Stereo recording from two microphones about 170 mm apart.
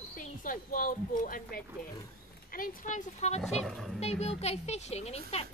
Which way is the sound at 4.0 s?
40° left (ahead or behind).